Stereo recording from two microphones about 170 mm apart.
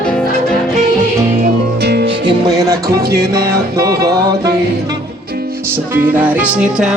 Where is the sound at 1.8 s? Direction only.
70° right (ahead or behind).